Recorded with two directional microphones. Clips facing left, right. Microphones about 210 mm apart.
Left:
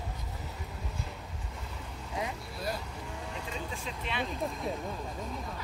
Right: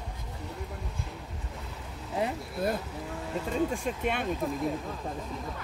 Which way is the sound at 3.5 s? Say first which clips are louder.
Right 14 dB; 45° right (ahead or behind).